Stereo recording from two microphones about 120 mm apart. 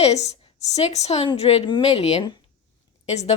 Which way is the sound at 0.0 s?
65° left (ahead or behind).